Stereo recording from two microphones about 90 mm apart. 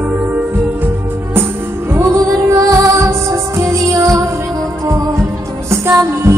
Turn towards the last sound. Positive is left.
turn(degrees=-30)  # may be behind; listen again after turning